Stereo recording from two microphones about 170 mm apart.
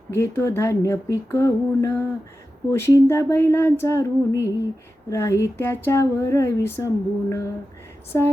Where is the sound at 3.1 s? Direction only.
15° left (ahead or behind).